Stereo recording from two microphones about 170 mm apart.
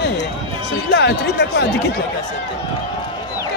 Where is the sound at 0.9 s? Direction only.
80° left.